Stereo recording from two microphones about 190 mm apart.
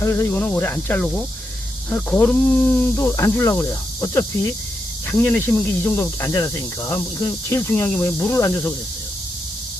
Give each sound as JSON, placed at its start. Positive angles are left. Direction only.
{"t": 0.0, "sound": "speech", "side_deg": 15}